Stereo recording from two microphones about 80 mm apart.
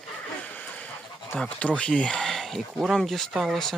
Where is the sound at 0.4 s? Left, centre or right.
Centre.